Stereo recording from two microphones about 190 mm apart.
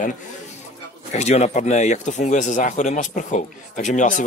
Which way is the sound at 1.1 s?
35° left (ahead or behind).